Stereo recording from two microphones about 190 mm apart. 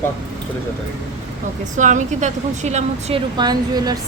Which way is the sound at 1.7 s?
40° right (ahead or behind).